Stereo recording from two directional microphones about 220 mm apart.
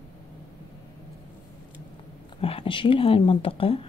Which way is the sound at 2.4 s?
25° left (ahead or behind).